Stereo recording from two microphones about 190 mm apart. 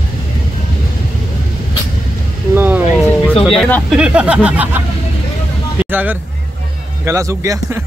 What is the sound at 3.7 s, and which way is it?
Speech, 5° right (ahead or behind).